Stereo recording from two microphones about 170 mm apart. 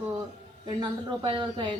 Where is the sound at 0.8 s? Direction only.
25° right (ahead or behind).